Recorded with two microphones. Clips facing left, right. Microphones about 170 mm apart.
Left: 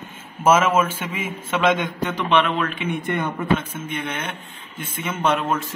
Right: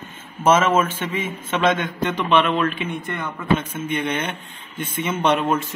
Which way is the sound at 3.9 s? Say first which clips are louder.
Right 5 dB; centre (ahead or behind).